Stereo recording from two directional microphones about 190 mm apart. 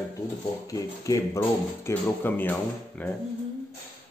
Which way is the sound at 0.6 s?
15° left (ahead or behind).